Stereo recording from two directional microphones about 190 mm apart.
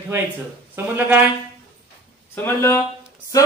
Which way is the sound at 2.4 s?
10° left (ahead or behind).